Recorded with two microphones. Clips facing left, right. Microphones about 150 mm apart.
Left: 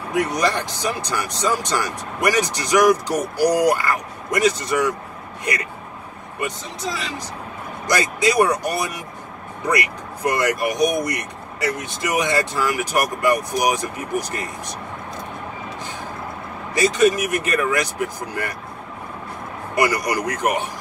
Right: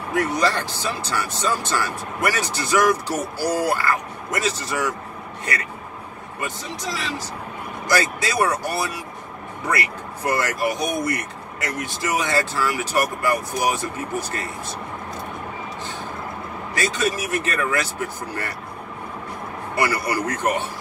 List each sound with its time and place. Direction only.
0.1 s speech: 15° left (ahead or behind)
7.9 s speech: 15° left (ahead or behind)
16.7 s speech: 20° left (ahead or behind)
19.7 s speech: 15° left (ahead or behind)